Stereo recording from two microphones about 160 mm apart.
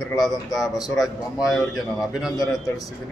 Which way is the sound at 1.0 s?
Centre (ahead or behind).